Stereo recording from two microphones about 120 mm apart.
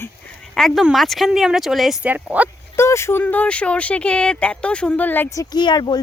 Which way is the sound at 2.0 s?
15° right (ahead or behind).